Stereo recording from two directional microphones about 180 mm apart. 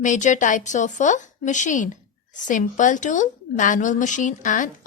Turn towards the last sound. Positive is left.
turn(degrees=45)  # may be behind; listen again after turning